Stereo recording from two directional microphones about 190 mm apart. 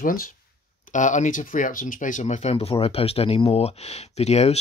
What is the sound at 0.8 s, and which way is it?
Speech, 40° left (ahead or behind).